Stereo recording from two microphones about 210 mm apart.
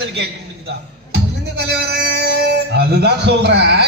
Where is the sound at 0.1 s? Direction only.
55° right (ahead or behind).